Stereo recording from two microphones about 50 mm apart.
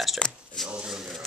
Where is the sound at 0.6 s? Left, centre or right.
Centre.